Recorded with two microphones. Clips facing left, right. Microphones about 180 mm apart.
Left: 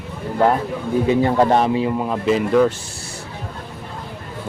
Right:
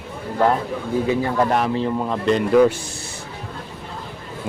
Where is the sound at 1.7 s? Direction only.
10° left (ahead or behind).